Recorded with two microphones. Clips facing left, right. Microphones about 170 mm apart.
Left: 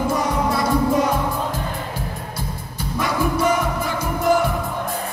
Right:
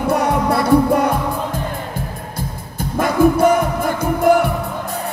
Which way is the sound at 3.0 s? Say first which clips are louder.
Right 7 dB; 55° right (ahead or behind).